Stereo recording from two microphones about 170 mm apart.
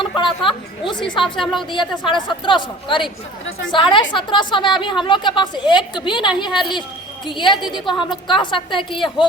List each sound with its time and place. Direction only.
0.0 s a woman's voice: 30° left (ahead or behind)
1.2 s a woman's voice: centre (ahead or behind)
1.7 s a woman's voice: 30° left (ahead or behind)